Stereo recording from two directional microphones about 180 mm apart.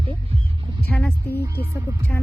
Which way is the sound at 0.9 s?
10° left (ahead or behind).